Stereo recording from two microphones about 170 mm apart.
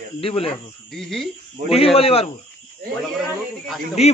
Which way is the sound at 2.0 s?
35° left (ahead or behind).